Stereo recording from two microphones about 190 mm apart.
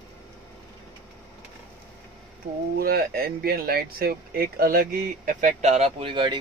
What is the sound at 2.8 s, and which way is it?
Speech, 50° right (ahead or behind).